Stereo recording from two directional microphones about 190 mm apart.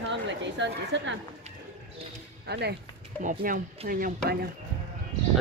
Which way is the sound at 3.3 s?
45° right (ahead or behind).